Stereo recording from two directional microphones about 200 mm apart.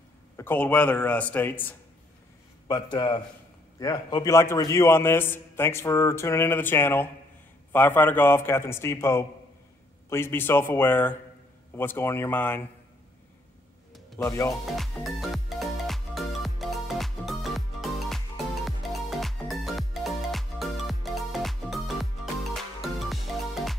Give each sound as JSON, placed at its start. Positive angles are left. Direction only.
{"t": 0.4, "sound": "a man's voice", "side_deg": 10}
{"t": 2.7, "sound": "a man's voice", "side_deg": 20}
{"t": 14.2, "sound": "a man's voice", "side_deg": 15}
{"t": 14.8, "sound": "music", "side_deg": 0}